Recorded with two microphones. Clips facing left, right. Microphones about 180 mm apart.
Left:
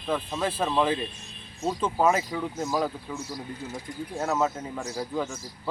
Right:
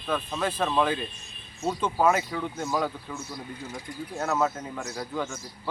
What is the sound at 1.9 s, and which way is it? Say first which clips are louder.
Speech: even; 15° left (ahead or behind).